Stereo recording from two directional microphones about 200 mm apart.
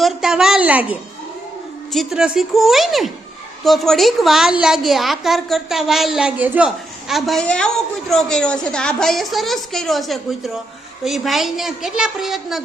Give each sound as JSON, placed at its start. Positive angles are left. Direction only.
{"t": 0.0, "sound": "a woman's voice", "side_deg": 0}